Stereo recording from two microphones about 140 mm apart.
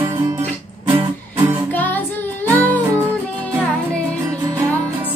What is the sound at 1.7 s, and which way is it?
Music, 10° left (ahead or behind).